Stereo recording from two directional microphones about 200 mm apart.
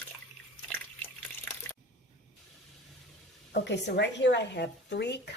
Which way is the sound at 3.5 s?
60° left (ahead or behind).